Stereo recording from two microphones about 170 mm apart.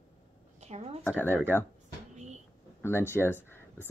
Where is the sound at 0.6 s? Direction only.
40° right (ahead or behind).